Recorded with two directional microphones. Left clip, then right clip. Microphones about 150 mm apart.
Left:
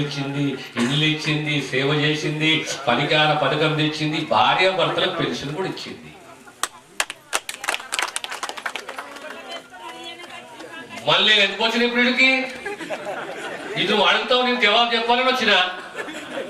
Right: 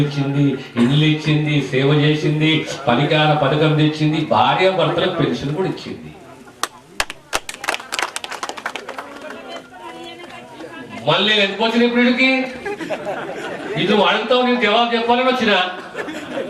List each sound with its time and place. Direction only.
0.0 s speech: 10° right (ahead or behind)
7.3 s a sound: 10° right (ahead or behind)
11.0 s a man's voice: 15° right (ahead or behind)